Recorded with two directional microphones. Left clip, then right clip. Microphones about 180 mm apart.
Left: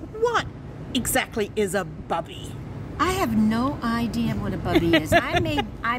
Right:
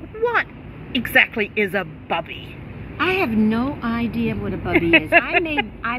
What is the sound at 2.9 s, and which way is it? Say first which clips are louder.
Speech: right 3 dB; 40° left (ahead or behind).